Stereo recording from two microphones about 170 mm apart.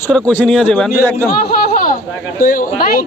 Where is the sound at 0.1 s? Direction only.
5° left (ahead or behind).